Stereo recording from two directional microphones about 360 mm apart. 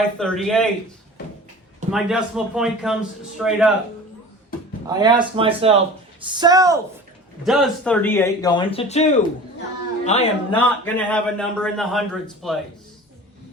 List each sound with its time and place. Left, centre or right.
0.2 s a man's voice: centre
1.9 s a man's voice: centre
4.9 s speech: centre
10.8 s a man's voice: centre